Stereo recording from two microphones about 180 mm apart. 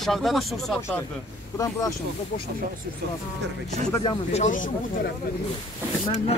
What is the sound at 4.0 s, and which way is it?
Speech, 35° left (ahead or behind).